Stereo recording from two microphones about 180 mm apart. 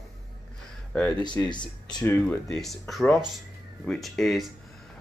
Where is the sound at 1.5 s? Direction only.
25° left (ahead or behind).